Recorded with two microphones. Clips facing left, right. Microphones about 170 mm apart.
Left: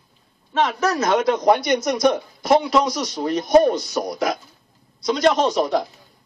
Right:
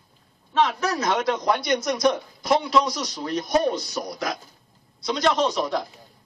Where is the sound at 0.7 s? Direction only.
Centre (ahead or behind).